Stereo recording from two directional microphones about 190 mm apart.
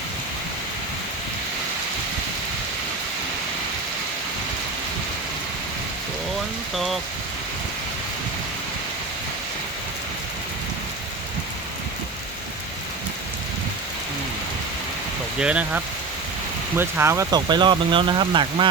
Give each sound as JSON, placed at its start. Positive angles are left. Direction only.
{"t": 6.7, "sound": "speech", "side_deg": 0}
{"t": 15.4, "sound": "speech", "side_deg": -5}